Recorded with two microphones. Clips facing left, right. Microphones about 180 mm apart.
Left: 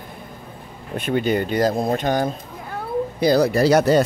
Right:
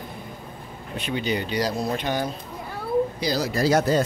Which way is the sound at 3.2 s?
55° left (ahead or behind).